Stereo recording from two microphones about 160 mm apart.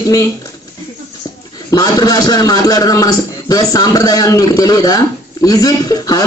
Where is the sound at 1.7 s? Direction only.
25° left (ahead or behind).